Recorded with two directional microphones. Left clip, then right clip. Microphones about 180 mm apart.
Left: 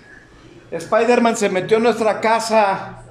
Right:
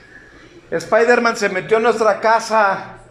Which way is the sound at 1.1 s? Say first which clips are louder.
Even; 20° left (ahead or behind).